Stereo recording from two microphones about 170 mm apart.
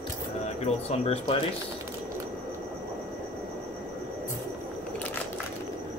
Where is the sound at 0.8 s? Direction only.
35° left (ahead or behind).